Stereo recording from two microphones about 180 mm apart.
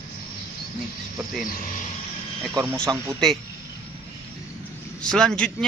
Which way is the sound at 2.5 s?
20° right (ahead or behind).